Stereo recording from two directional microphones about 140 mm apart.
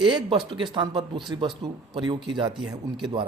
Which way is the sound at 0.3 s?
35° right (ahead or behind).